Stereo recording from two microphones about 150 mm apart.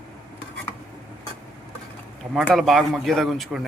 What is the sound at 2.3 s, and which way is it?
A man's voice, centre (ahead or behind).